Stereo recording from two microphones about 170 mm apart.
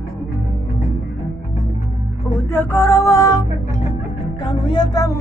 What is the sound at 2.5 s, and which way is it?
Music, 15° left (ahead or behind).